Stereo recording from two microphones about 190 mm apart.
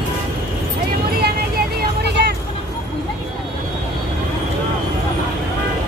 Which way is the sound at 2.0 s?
60° right (ahead or behind).